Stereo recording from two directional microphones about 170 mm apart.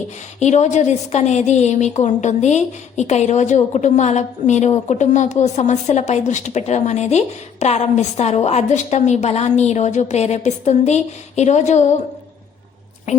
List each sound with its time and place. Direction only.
0.3 s a woman's voice: 45° left (ahead or behind)
13.1 s a woman's voice: 45° left (ahead or behind)